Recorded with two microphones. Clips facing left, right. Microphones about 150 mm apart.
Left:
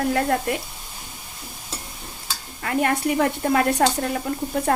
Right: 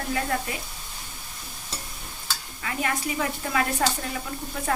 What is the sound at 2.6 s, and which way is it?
Speech, 55° left (ahead or behind).